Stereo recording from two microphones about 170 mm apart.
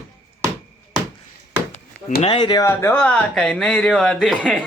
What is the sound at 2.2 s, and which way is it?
Speech, 30° left (ahead or behind).